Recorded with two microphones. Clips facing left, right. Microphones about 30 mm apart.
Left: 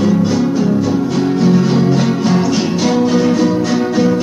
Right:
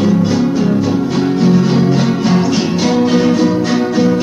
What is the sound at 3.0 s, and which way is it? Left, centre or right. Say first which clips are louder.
Music: right 2 dB; right.